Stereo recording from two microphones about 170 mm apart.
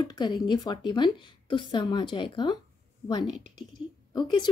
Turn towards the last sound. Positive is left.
turn(degrees=25)  # may be behind; listen again after turning